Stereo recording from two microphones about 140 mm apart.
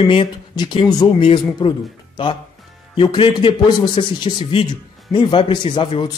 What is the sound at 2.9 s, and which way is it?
Speech, 35° left (ahead or behind).